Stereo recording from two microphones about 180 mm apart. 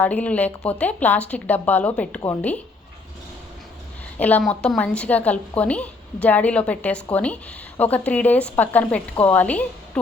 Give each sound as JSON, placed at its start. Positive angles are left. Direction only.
{"t": 0.0, "sound": "a woman's voice", "side_deg": 10}
{"t": 4.2, "sound": "a woman's voice", "side_deg": 10}